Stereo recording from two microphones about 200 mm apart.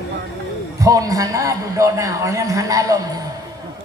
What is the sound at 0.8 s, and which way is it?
A man's voice, 15° right (ahead or behind).